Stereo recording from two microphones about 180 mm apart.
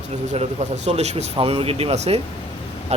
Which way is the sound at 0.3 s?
40° right (ahead or behind).